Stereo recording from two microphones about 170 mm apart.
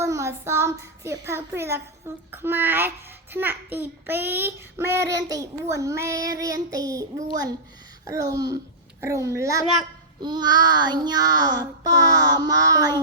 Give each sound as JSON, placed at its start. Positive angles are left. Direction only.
{"t": 0.0, "sound": "child singing", "side_deg": -15}